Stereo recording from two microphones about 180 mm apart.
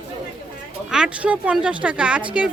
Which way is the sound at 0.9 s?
5° right (ahead or behind).